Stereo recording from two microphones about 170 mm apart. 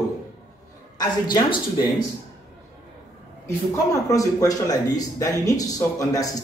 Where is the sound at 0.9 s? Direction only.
25° left (ahead or behind).